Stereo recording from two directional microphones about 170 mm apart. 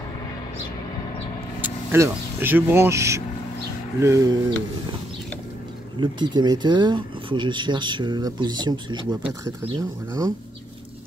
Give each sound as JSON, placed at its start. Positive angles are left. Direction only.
{"t": 1.9, "sound": "speech", "side_deg": -10}
{"t": 5.9, "sound": "speech", "side_deg": -25}